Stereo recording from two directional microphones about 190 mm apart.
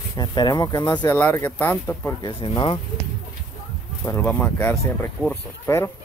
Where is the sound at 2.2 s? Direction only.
25° left (ahead or behind).